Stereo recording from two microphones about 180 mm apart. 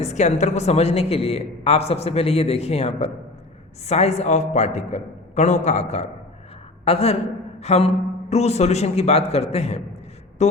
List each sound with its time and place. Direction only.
0.0 s a woman's voice: 40° left (ahead or behind)